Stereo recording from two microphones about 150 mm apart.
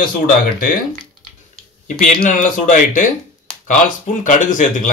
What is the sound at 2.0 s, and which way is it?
Speech, 60° left (ahead or behind).